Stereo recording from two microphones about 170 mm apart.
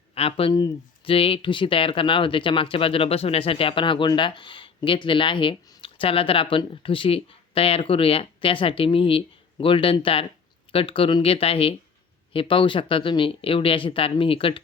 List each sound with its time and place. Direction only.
0.1 s speech: 35° left (ahead or behind)